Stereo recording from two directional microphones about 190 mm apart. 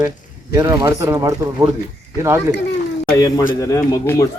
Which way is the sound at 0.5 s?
20° right (ahead or behind).